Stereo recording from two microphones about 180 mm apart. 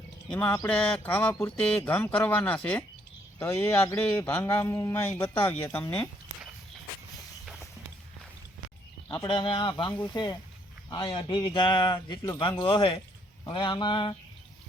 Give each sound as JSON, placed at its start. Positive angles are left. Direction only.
{"t": 0.3, "sound": "a man's voice", "side_deg": 5}
{"t": 1.5, "sound": "a man's voice", "side_deg": 5}
{"t": 9.0, "sound": "speech", "side_deg": 25}